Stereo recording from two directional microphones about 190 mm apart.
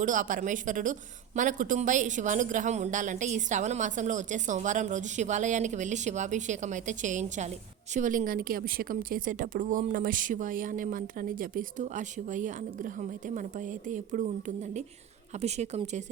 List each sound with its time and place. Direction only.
0.0 s a woman's voice: 45° right (ahead or behind)